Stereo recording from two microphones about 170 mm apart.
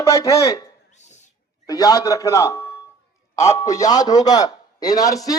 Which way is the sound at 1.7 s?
20° left (ahead or behind).